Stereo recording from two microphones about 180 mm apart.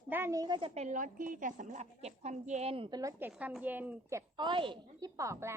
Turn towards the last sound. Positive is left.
turn(degrees=-15)  # may be behind; listen again after turning